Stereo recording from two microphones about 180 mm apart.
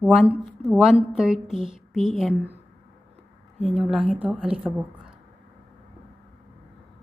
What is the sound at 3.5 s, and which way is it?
A woman's voice, centre (ahead or behind).